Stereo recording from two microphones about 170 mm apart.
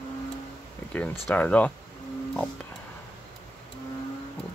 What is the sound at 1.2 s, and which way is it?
Speech, 10° left (ahead or behind).